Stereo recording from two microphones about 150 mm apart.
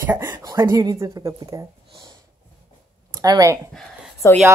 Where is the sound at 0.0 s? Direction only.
15° right (ahead or behind).